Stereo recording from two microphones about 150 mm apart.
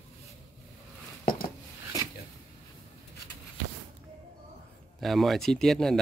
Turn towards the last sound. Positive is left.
turn(degrees=5)  # may be behind; listen again after turning